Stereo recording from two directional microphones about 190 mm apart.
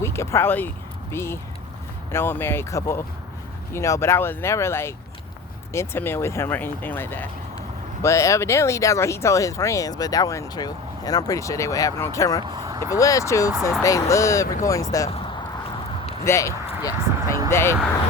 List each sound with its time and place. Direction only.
0.0 s speech: 15° left (ahead or behind)
12.5 s speech: 15° right (ahead or behind)
12.9 s speech: 15° left (ahead or behind)
16.2 s speech: 15° left (ahead or behind)